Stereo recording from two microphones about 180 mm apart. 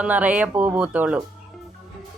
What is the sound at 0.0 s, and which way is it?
Speech, 10° right (ahead or behind).